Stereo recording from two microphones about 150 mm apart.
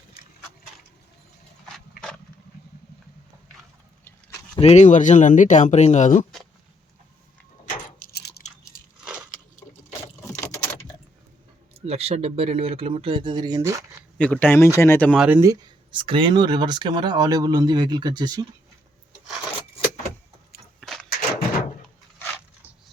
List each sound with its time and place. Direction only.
4.6 s speech: 50° left (ahead or behind)
7.6 s a sound: 65° left (ahead or behind); by 8.4 s 90° left
10.5 s keys jangling: 15° left (ahead or behind)
11.7 s speech: 40° right (ahead or behind); by 13.8 s 20° right (ahead or behind)
14.2 s speech: 10° left (ahead or behind)
15.1 s speech: 5° right (ahead or behind)
15.9 s speech: 35° right (ahead or behind)
20.8 s a sound: 5° left (ahead or behind)